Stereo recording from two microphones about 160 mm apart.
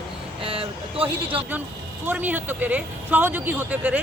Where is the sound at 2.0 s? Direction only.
10° right (ahead or behind).